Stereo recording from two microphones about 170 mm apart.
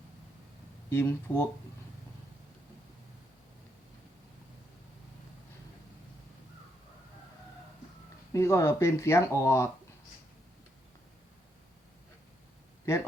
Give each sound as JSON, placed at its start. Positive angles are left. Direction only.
{"t": 0.9, "sound": "speech", "side_deg": 15}
{"t": 8.3, "sound": "speech", "side_deg": 15}
{"t": 12.9, "sound": "speech", "side_deg": 15}